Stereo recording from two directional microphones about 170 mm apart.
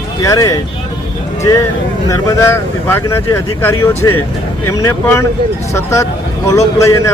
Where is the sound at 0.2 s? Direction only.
20° left (ahead or behind).